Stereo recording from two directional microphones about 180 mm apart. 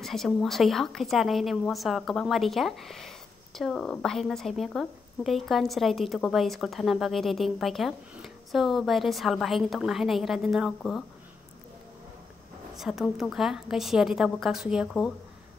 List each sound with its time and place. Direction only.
0.0 s a woman's voice: centre (ahead or behind)
12.7 s a woman's voice: centre (ahead or behind)